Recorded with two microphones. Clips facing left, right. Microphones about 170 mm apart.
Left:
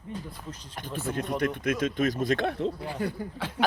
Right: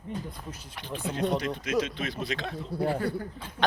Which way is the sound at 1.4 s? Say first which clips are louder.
Left 1 dB; 55° left (ahead or behind).